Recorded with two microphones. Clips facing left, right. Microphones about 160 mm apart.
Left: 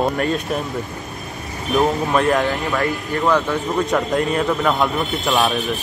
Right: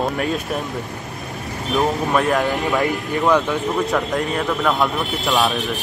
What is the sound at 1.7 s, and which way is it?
Speech, centre (ahead or behind).